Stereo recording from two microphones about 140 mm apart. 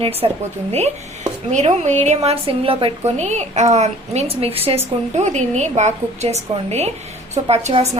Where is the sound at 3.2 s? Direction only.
55° right (ahead or behind).